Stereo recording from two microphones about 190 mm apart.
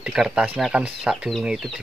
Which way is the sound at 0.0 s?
5° right (ahead or behind).